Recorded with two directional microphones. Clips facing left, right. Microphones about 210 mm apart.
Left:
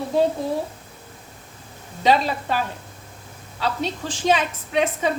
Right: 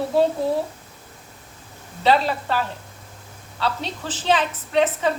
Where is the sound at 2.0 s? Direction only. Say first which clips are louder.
Even; 15° left (ahead or behind).